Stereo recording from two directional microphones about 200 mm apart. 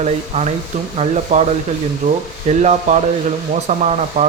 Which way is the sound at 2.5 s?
35° right (ahead or behind).